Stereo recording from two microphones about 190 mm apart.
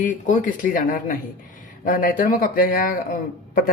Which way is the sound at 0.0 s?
45° left (ahead or behind).